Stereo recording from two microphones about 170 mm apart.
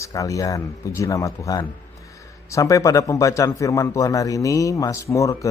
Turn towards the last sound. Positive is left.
turn(degrees=20)  # may be behind; listen again after turning